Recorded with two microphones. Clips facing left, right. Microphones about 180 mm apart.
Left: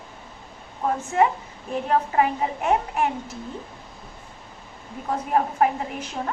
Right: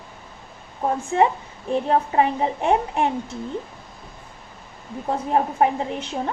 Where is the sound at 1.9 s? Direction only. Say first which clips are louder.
Right 1 dB; 30° right (ahead or behind).